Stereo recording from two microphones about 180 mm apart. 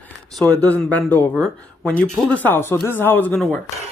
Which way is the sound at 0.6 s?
10° left (ahead or behind).